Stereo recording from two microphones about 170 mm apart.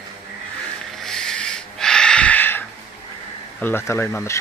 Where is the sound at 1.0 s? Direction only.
5° left (ahead or behind).